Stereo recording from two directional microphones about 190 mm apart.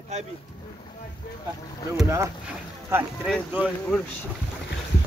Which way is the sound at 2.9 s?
10° right (ahead or behind).